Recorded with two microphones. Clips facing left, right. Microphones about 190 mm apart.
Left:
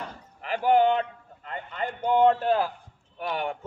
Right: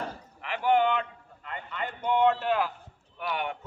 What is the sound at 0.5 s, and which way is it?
A man's voice, 35° left (ahead or behind).